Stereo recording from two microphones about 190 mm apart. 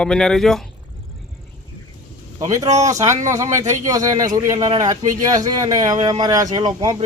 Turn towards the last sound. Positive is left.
turn(degrees=-20)  # may be behind; listen again after turning